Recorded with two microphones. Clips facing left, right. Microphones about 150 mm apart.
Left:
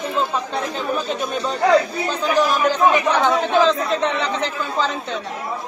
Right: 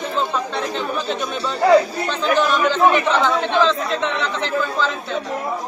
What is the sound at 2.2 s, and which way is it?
Speech, 10° left (ahead or behind).